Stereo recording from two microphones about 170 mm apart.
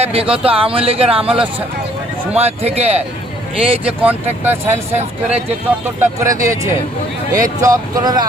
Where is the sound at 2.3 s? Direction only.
35° right (ahead or behind).